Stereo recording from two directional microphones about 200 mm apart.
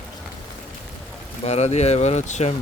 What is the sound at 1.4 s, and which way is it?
Speech, 30° left (ahead or behind).